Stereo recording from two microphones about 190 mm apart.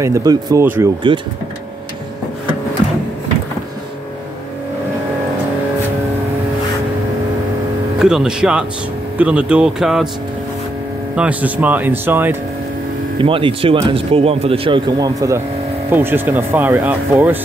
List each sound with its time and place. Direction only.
0.0 s speech: 15° right (ahead or behind)
1.0 s speech: 25° right (ahead or behind)
8.0 s speech: 5° right (ahead or behind)
11.1 s speech: 5° right (ahead or behind)
13.2 s speech: 30° right (ahead or behind); by 17.4 s 10° right (ahead or behind)